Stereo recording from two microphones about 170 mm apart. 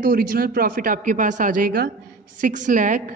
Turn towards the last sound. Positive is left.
turn(degrees=-50)  # may be behind; listen again after turning